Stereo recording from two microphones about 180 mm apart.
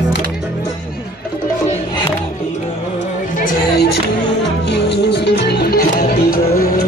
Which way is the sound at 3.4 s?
65° left (ahead or behind).